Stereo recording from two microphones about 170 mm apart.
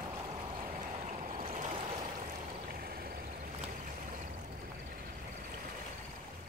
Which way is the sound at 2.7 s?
60° right (ahead or behind).